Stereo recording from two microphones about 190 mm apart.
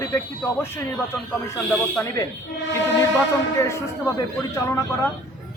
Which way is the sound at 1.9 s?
15° left (ahead or behind).